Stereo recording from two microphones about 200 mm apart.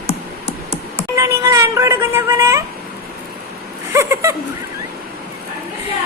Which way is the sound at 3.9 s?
15° right (ahead or behind).